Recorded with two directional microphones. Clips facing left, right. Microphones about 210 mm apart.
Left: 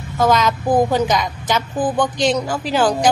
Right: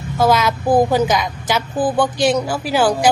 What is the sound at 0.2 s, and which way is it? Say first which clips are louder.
A woman's voice: right 1 dB; 10° right (ahead or behind).